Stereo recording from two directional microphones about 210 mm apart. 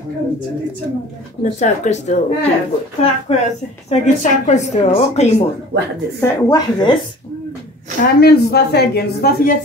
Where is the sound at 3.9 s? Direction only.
35° left (ahead or behind).